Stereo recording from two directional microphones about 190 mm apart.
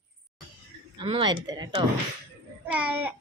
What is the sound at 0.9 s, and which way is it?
Speech, 25° right (ahead or behind).